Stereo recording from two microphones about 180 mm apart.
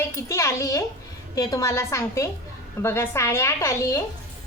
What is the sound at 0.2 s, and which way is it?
A child's voice, 15° left (ahead or behind).